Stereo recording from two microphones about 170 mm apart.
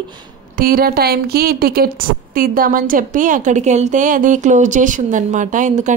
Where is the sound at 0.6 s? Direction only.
60° right (ahead or behind).